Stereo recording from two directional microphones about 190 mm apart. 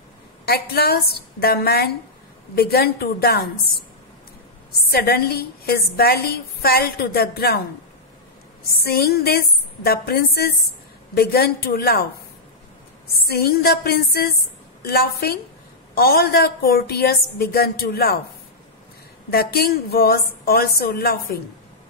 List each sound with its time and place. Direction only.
0.5 s a woman's voice: 55° left (ahead or behind)
4.9 s a woman's voice: 55° left (ahead or behind)
8.7 s a woman's voice: 55° left (ahead or behind)
13.3 s a woman's voice: 55° left (ahead or behind)
19.3 s a woman's voice: 55° left (ahead or behind)